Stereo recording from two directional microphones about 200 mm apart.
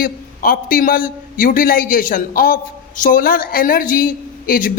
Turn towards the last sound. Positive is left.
turn(degrees=45)  # may be behind; listen again after turning